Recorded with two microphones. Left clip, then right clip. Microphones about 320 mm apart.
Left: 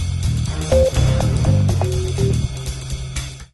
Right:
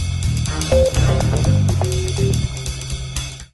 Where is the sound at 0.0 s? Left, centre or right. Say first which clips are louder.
Right 2 dB; centre.